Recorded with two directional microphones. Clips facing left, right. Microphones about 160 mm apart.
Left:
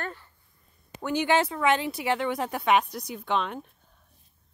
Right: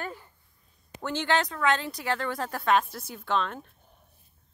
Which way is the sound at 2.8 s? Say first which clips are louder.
Left 4 dB; 5° right (ahead or behind).